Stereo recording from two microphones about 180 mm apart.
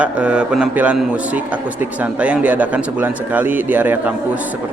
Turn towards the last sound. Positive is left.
turn(degrees=-10)  # may be behind; listen again after turning